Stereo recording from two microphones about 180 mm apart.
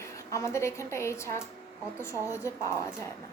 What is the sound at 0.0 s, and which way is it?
Speech, 15° left (ahead or behind).